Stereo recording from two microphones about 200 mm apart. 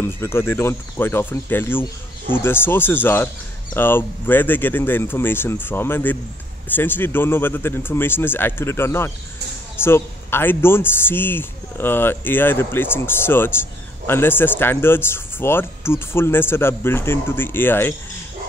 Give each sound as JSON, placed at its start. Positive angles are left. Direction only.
{"t": 0.0, "sound": "a man's voice", "side_deg": 10}